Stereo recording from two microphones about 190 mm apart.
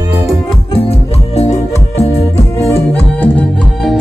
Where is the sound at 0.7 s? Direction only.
35° left (ahead or behind).